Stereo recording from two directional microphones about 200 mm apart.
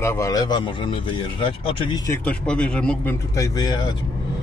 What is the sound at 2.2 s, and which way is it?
Speech, 5° left (ahead or behind).